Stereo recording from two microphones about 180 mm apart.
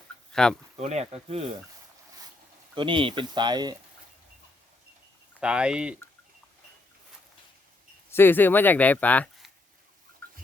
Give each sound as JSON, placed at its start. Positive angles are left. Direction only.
{"t": 0.3, "sound": "speech", "side_deg": 5}
{"t": 0.8, "sound": "speech", "side_deg": -40}
{"t": 2.7, "sound": "speech", "side_deg": -30}
{"t": 5.4, "sound": "speech", "side_deg": -5}
{"t": 8.1, "sound": "speech", "side_deg": 10}